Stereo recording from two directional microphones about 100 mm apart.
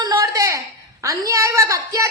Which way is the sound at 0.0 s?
40° right (ahead or behind).